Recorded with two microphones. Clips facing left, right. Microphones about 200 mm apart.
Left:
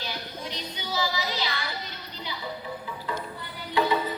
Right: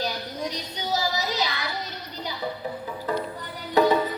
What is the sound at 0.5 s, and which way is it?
Music, 45° right (ahead or behind).